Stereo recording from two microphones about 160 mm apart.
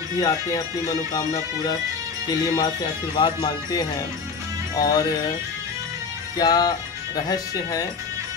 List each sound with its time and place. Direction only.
0.2 s speech: 25° left (ahead or behind)
4.8 s speech: 25° left (ahead or behind)
6.3 s speech: 25° left (ahead or behind)